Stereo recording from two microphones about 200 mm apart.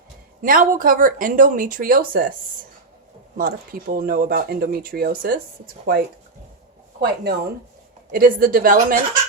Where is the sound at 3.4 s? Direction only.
45° right (ahead or behind).